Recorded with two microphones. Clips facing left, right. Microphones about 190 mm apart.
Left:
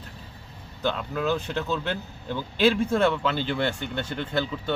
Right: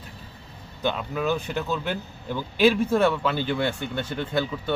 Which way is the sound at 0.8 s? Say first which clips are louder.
Right 1 dB; 15° right (ahead or behind).